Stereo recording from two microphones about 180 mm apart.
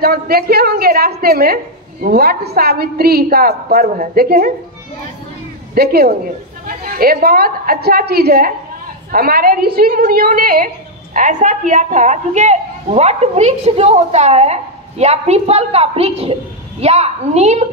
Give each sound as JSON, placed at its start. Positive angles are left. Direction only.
{"t": 0.0, "sound": "a woman's voice", "side_deg": -55}
{"t": 5.8, "sound": "a woman's voice", "side_deg": -60}